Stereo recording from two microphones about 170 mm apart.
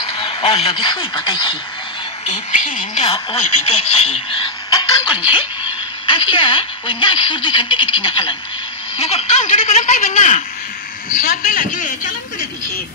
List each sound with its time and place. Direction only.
0.0 s speech: 30° left (ahead or behind)
2.2 s a woman's voice: 45° left (ahead or behind)
2.8 s a woman's voice: 35° left (ahead or behind)
4.6 s a sound: 25° left (ahead or behind)
6.0 s a woman's voice: 30° left (ahead or behind); by 12.1 s 50° left (ahead or behind)